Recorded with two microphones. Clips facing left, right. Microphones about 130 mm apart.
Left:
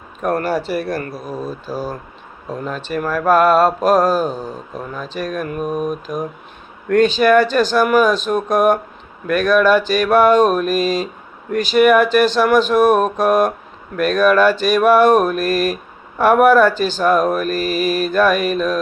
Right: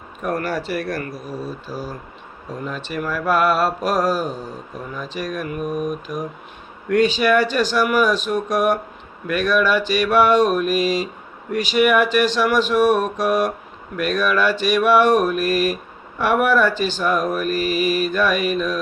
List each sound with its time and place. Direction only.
0.2 s speech: 30° left (ahead or behind)
0.6 s speech: centre (ahead or behind)
0.9 s speech: 25° left (ahead or behind)
2.5 s mantra: 35° left (ahead or behind)
6.8 s speech: 10° right (ahead or behind)
7.1 s mantra: 35° left (ahead or behind)